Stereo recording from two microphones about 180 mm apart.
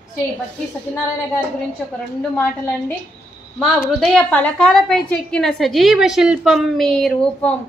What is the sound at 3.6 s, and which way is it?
A woman's voice, centre (ahead or behind).